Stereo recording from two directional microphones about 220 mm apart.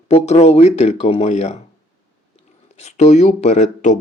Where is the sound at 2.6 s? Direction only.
30° left (ahead or behind).